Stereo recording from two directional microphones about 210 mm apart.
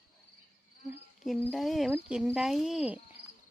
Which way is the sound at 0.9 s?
Centre (ahead or behind).